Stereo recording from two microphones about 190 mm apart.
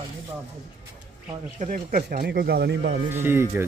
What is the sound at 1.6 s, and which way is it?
Speech, 45° right (ahead or behind).